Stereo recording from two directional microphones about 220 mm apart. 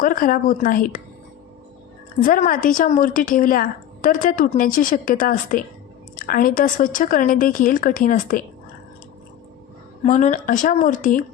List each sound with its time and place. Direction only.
0.0 s a woman's voice: 40° left (ahead or behind)
2.2 s a woman's voice: 40° left (ahead or behind)
10.0 s a woman's voice: 35° left (ahead or behind)